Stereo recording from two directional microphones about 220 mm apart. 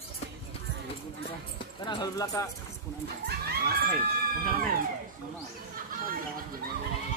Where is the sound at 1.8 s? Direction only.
15° left (ahead or behind).